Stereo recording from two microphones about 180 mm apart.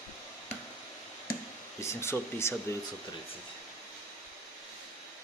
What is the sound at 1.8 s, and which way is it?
Speech, 15° left (ahead or behind).